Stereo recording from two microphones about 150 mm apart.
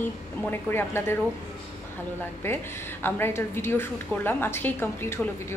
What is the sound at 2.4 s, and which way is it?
A woman's voice, 15° left (ahead or behind).